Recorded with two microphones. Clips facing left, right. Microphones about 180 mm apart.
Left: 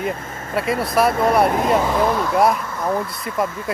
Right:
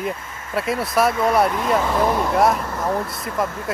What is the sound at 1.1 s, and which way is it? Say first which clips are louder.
Speech: left 2 dB; 50° left (ahead or behind).